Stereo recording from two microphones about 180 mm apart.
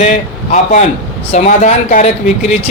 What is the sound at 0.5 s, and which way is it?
Speech, 40° left (ahead or behind).